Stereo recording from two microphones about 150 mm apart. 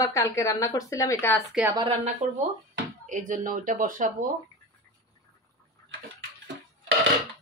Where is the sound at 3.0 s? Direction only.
60° right (ahead or behind).